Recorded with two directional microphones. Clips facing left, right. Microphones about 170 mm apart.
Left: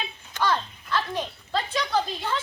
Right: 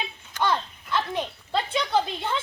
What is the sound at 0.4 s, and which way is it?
Children playing, 20° right (ahead or behind).